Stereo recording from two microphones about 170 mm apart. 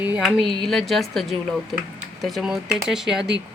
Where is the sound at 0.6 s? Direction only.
Centre (ahead or behind).